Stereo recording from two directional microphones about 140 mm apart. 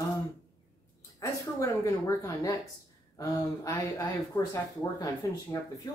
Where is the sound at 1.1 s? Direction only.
25° left (ahead or behind).